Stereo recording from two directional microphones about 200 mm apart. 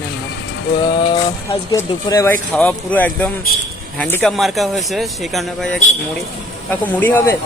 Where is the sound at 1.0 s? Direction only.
25° left (ahead or behind); by 5.8 s centre (ahead or behind).